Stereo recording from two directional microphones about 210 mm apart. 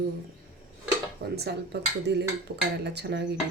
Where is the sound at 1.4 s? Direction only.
55° right (ahead or behind).